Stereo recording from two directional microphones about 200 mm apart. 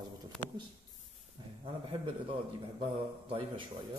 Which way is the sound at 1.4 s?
25° right (ahead or behind).